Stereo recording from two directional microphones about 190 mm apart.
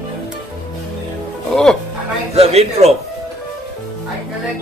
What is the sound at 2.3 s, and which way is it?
Speech, 35° right (ahead or behind).